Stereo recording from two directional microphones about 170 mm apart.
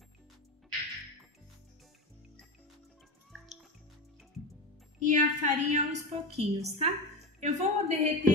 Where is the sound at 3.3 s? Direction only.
Centre (ahead or behind).